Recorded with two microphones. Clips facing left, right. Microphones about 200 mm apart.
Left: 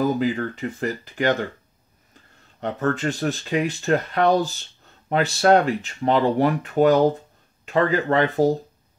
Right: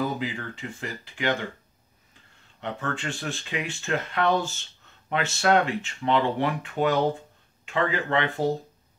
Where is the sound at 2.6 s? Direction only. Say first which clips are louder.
Left 8 dB; 40° left (ahead or behind).